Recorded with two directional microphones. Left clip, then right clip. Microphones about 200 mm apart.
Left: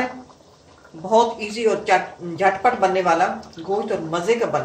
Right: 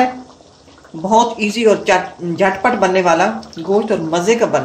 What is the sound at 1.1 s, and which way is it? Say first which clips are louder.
Speech: right 4 dB; 50° right (ahead or behind).